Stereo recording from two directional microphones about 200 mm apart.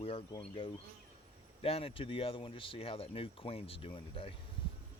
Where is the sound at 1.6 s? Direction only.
30° left (ahead or behind).